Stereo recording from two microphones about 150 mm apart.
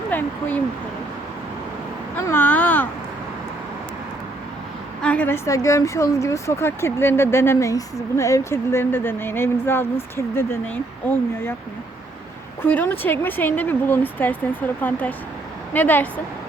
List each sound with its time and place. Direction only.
0.1 s speech: 10° left (ahead or behind)
2.1 s a sound: 15° left (ahead or behind)
5.0 s a woman's voice: 10° left (ahead or behind)
12.6 s a woman's voice: 10° left (ahead or behind)